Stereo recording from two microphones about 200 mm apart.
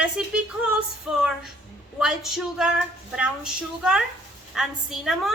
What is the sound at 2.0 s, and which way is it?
A woman's voice, centre (ahead or behind).